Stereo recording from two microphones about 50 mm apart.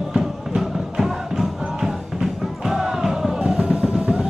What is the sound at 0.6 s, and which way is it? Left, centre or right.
Music, centre.